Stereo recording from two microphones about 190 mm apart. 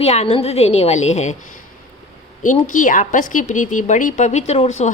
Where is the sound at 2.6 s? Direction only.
45° left (ahead or behind).